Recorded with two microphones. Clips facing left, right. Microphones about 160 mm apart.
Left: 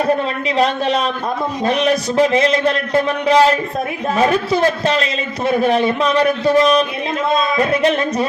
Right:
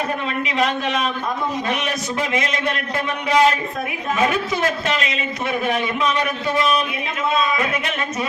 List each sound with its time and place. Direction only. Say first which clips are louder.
0.5 s a man's voice: left 6 dB; 35° left (ahead or behind)